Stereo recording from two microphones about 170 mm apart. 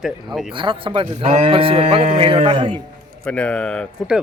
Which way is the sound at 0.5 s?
30° right (ahead or behind).